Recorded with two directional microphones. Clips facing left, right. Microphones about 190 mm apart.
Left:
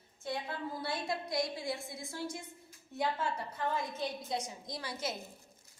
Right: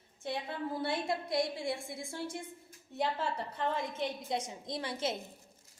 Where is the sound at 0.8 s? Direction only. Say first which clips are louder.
Right 4 dB; 25° right (ahead or behind).